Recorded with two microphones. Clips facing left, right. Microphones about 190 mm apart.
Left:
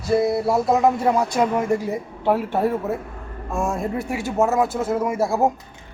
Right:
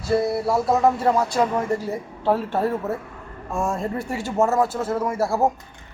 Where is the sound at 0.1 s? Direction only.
15° left (ahead or behind).